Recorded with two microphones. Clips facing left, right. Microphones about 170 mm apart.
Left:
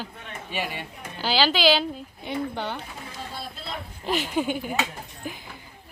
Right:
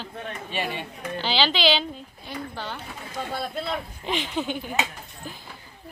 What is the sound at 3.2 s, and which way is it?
Speech, 55° right (ahead or behind).